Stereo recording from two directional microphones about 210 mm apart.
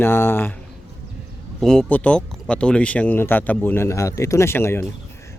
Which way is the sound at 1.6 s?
Centre (ahead or behind).